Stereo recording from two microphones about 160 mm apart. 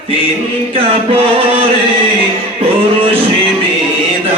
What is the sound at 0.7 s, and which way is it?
Chant, 35° right (ahead or behind).